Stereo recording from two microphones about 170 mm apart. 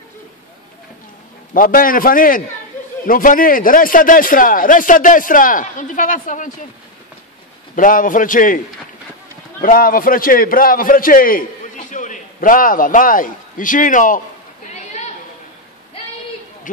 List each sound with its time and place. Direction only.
1.5 s a man's voice: 55° left (ahead or behind)
7.7 s speech: 50° left (ahead or behind)
9.6 s a man's voice: 55° left (ahead or behind)
14.7 s chatter: 40° left (ahead or behind)
16.7 s a sound: 50° left (ahead or behind)